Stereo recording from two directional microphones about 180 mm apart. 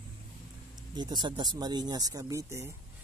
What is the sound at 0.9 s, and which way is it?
Speech, 25° right (ahead or behind).